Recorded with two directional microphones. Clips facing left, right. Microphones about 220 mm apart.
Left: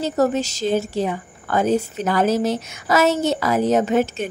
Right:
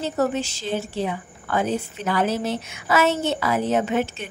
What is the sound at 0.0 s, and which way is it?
A woman's voice, 40° left (ahead or behind).